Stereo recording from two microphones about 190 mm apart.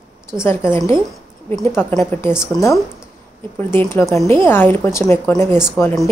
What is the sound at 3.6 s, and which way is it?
Speech, 10° left (ahead or behind).